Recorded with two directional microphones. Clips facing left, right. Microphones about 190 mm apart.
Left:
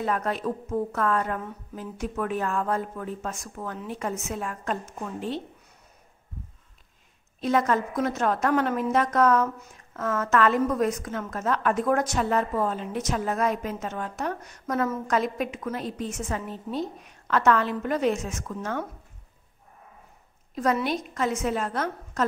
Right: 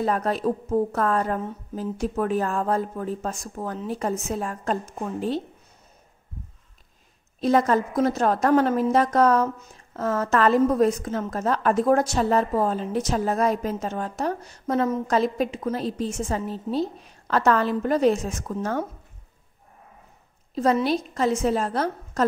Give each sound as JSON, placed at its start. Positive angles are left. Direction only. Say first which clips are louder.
{"t": 0.0, "sound": "a woman's voice", "louder": "right 4 dB", "side_deg": -35}
{"t": 7.3, "sound": "a woman's voice", "louder": "right 4 dB", "side_deg": -35}
{"t": 20.5, "sound": "a woman's voice", "louder": "right 4 dB", "side_deg": -30}